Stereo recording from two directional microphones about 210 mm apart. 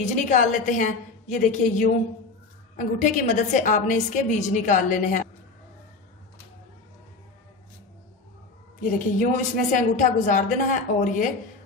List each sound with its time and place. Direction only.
0.0 s a woman's voice: 35° left (ahead or behind)
8.9 s a woman's voice: 35° left (ahead or behind)